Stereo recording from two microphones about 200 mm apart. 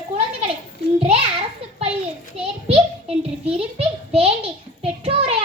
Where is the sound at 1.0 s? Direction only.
30° right (ahead or behind).